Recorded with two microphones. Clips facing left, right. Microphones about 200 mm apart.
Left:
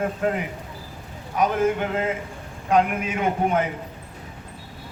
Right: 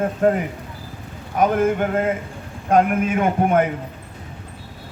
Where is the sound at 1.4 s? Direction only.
50° right (ahead or behind).